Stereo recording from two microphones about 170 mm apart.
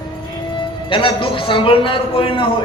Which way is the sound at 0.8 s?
30° left (ahead or behind).